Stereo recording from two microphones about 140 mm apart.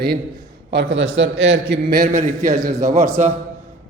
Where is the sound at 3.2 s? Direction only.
60° right (ahead or behind).